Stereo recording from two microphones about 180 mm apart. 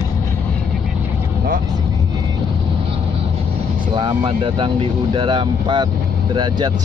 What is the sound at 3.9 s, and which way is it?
Speech, 25° right (ahead or behind).